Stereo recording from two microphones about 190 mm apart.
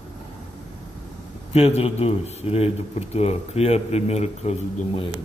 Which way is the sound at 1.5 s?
35° left (ahead or behind).